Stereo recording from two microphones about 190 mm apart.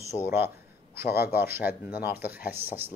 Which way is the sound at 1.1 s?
55° left (ahead or behind).